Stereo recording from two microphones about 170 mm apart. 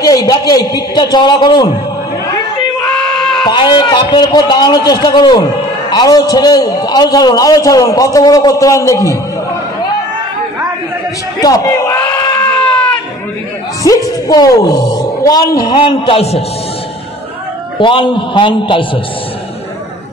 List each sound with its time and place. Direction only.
0.0 s a man's voice: 20° left (ahead or behind)
3.2 s a sound: 5° left (ahead or behind)
3.4 s a man's voice: 25° left (ahead or behind)
11.3 s a sound: 20° left (ahead or behind)
13.8 s a man's voice: 20° left (ahead or behind)
17.7 s a man's voice: 30° left (ahead or behind)